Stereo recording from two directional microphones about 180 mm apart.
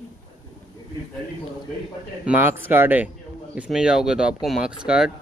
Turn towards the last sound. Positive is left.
turn(degrees=-5)  # may be behind; listen again after turning